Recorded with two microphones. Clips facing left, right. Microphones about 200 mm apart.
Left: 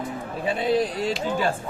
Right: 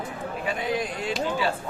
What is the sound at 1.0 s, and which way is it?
Speech, 40° left (ahead or behind).